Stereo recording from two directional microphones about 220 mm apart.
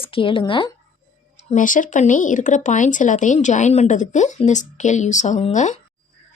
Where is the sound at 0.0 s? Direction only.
25° left (ahead or behind).